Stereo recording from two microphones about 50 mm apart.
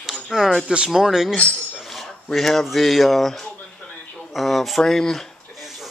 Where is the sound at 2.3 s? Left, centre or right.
Centre.